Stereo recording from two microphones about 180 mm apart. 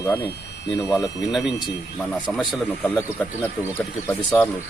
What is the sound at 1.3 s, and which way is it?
Speech, centre (ahead or behind).